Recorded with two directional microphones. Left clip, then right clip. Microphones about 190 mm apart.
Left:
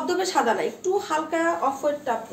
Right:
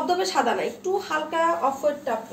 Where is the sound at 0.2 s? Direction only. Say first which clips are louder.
Left 1 dB; 25° left (ahead or behind).